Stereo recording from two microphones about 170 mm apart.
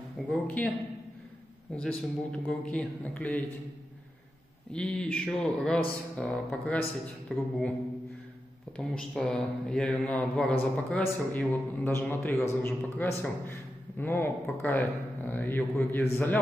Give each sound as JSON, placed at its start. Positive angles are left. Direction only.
{"t": 0.3, "sound": "speech", "side_deg": 10}
{"t": 1.8, "sound": "speech", "side_deg": 5}
{"t": 4.7, "sound": "speech", "side_deg": 5}
{"t": 8.7, "sound": "speech", "side_deg": 5}